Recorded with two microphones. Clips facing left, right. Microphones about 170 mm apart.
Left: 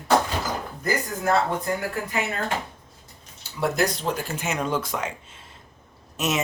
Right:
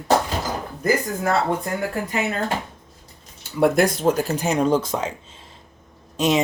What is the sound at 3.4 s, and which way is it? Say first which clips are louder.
Speech: right 6 dB; 55° right (ahead or behind).